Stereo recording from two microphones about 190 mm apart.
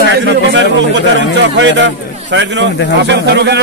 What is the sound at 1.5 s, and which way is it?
A man's voice, 70° right (ahead or behind).